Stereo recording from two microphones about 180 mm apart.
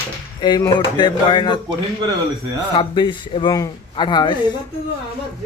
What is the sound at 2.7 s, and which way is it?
Speech, 25° left (ahead or behind).